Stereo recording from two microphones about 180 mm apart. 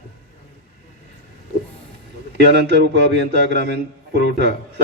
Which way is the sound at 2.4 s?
65° right (ahead or behind).